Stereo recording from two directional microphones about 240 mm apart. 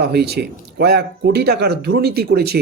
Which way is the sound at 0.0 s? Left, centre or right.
Right.